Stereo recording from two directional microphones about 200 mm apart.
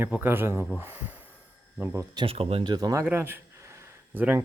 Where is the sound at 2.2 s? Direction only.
30° right (ahead or behind).